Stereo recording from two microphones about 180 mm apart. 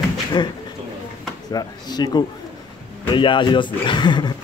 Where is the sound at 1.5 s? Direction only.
20° left (ahead or behind).